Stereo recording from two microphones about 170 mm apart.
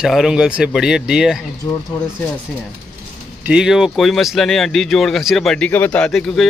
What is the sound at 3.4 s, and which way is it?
Speech, 5° right (ahead or behind).